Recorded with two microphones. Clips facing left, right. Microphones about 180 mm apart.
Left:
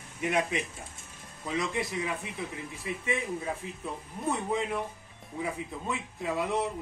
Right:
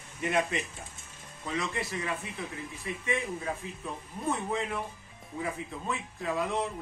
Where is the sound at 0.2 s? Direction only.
10° left (ahead or behind).